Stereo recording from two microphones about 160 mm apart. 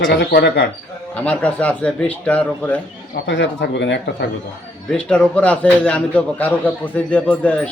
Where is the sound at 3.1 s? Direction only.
90° left.